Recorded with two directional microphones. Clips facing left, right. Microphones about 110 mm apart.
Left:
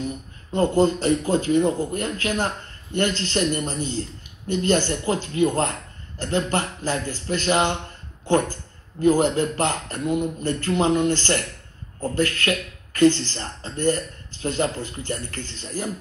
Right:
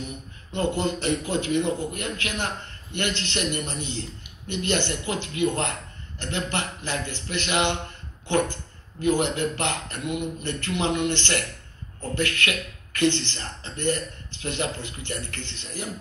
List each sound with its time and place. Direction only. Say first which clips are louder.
0.5 s a man's voice: left 7 dB; 40° left (ahead or behind)
9.0 s a man's voice: left 5 dB; 40° left (ahead or behind)